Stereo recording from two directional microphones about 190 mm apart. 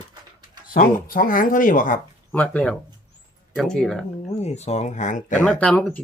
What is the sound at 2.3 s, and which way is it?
Speech, 10° left (ahead or behind).